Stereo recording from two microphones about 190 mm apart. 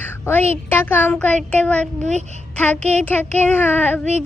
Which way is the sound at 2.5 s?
5° left (ahead or behind).